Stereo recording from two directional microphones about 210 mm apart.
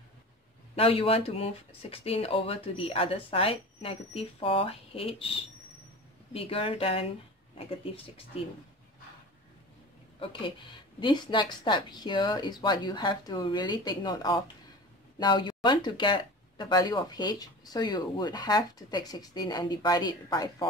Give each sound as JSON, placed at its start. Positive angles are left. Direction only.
{"t": 0.7, "sound": "speech", "side_deg": 25}
{"t": 10.2, "sound": "speech", "side_deg": 25}